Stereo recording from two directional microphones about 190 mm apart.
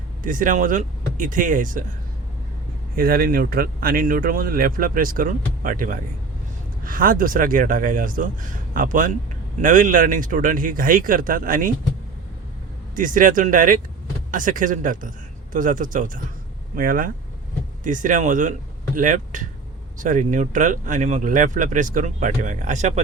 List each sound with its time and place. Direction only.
0.2 s speech: 45° right (ahead or behind)
2.9 s speech: 50° right (ahead or behind)
13.0 s speech: 45° right (ahead or behind)